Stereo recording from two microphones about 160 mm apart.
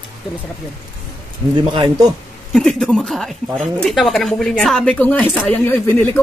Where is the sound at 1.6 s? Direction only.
25° right (ahead or behind).